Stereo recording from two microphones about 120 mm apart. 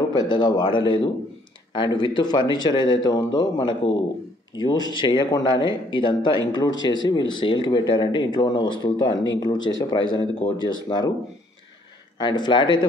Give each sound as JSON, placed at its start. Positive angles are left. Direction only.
{"t": 0.2, "sound": "speech", "side_deg": 40}
{"t": 12.2, "sound": "speech", "side_deg": 40}